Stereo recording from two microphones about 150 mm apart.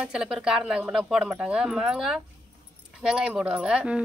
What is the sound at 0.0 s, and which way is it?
A woman's voice, 5° right (ahead or behind).